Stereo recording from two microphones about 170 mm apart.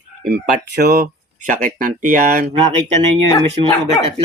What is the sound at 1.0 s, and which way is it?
Speech, 50° right (ahead or behind).